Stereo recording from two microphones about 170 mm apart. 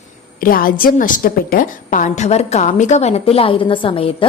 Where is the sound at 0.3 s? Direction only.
55° left (ahead or behind).